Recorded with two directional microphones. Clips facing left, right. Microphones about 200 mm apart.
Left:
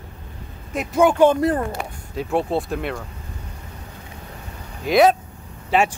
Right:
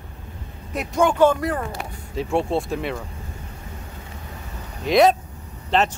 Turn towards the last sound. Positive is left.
turn(degrees=10)  # may be behind; listen again after turning